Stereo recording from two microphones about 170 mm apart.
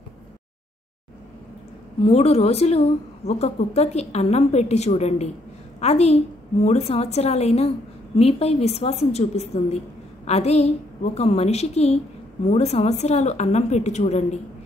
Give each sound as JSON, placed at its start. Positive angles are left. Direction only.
{"t": 2.0, "sound": "a woman's voice", "side_deg": 35}